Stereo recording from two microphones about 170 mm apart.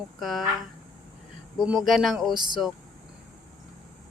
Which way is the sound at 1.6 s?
Centre (ahead or behind).